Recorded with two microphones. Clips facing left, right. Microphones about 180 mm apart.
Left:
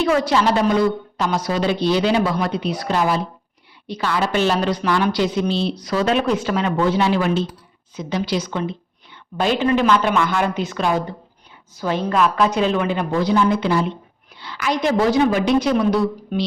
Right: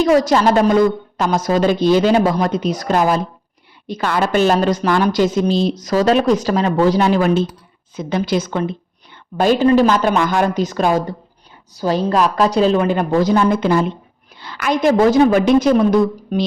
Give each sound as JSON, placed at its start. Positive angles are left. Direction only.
{"t": 0.0, "sound": "a woman's voice", "side_deg": -40}